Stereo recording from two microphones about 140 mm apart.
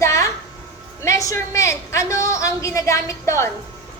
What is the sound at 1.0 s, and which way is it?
A child's voice, 20° left (ahead or behind).